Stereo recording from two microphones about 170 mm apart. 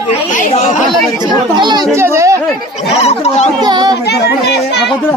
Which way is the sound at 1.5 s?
25° right (ahead or behind).